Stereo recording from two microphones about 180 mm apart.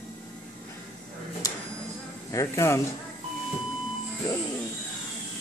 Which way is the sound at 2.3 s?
15° left (ahead or behind).